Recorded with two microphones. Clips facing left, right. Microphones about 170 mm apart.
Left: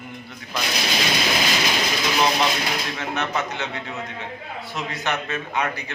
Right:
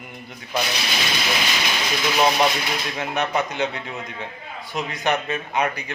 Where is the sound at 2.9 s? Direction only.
15° right (ahead or behind).